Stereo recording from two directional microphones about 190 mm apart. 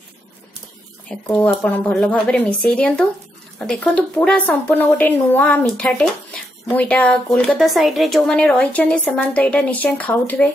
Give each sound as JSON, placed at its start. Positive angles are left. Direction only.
{"t": 1.2, "sound": "a woman's voice", "side_deg": 5}